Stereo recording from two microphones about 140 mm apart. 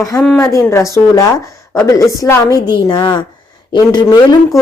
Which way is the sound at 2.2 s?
25° left (ahead or behind).